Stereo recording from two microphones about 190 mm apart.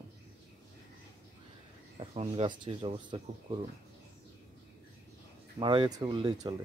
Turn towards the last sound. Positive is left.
turn(degrees=-20)  # may be behind; listen again after turning